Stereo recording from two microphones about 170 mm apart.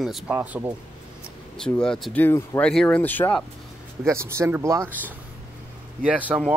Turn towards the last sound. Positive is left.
turn(degrees=-10)  # may be behind; listen again after turning